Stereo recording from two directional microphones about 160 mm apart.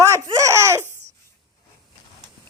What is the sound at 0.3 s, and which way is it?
Laughter, 20° right (ahead or behind).